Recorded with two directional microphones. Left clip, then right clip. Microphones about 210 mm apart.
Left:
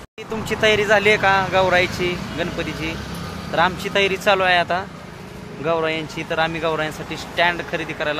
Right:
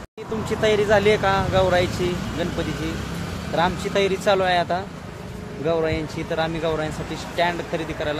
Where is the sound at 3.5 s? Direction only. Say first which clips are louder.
Left 3 dB; centre (ahead or behind).